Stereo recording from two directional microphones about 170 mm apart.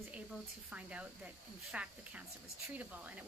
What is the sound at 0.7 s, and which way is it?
A woman's voice, 5° right (ahead or behind).